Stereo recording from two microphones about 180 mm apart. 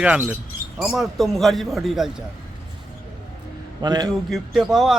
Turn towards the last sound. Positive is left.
turn(degrees=0)  # may be behind; listen again after turning